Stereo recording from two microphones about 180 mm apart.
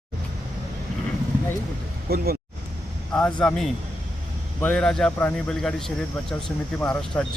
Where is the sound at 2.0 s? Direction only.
55° right (ahead or behind).